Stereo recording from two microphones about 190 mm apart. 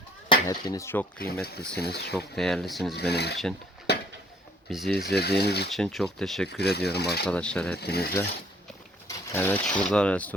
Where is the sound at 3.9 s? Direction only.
60° left (ahead or behind).